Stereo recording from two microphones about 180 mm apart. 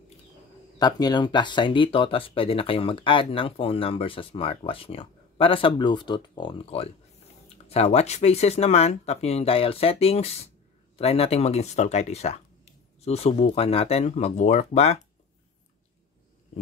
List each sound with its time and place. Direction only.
0.7 s speech: 20° left (ahead or behind); by 15.0 s 40° left (ahead or behind)